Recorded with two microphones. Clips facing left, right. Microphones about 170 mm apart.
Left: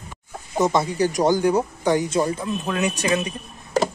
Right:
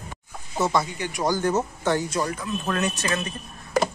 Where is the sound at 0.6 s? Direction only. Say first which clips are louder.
Left 3 dB; 20° left (ahead or behind).